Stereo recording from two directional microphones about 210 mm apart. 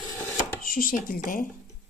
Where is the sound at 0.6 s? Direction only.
40° left (ahead or behind).